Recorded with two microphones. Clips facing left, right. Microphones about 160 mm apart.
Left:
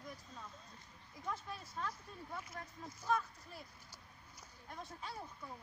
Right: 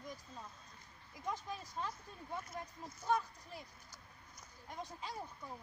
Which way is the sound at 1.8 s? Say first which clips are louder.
Right 1 dB; 20° right (ahead or behind).